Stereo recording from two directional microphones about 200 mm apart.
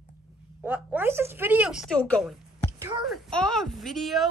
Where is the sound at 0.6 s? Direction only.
5° right (ahead or behind).